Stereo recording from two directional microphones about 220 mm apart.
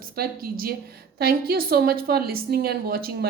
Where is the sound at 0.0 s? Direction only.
40° right (ahead or behind).